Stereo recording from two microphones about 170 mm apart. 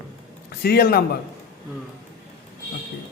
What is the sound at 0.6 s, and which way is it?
Speech, 60° left (ahead or behind).